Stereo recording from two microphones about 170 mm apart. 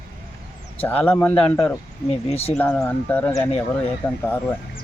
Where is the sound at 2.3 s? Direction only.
35° left (ahead or behind).